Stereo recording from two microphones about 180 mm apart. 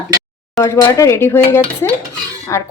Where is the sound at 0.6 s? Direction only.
15° left (ahead or behind).